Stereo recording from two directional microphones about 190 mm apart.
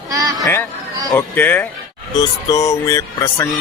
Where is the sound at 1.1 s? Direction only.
10° left (ahead or behind).